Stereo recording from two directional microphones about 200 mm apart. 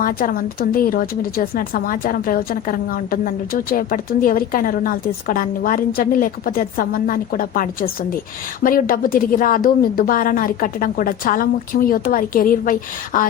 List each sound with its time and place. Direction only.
0.0 s a woman's voice: 45° left (ahead or behind)